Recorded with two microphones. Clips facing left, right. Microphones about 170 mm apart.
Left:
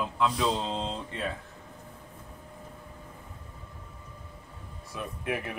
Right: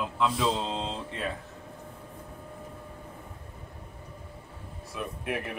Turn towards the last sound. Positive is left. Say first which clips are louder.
# even
turn(degrees=0)  # may be behind; listen again after turning